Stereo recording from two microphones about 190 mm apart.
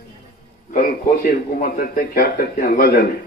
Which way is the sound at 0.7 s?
50° left (ahead or behind).